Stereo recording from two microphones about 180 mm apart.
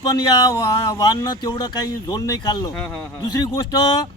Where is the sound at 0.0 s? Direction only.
20° left (ahead or behind).